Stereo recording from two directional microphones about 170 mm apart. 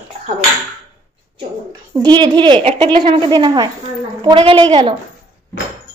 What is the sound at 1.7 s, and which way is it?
A woman's voice, 20° right (ahead or behind).